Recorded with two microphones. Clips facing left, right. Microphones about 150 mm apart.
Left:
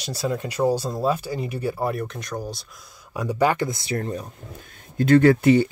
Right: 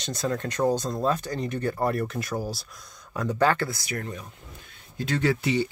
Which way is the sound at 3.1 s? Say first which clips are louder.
Left 2 dB; 10° left (ahead or behind).